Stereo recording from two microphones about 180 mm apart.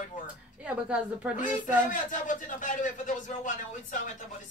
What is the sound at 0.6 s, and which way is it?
Speech, 5° right (ahead or behind).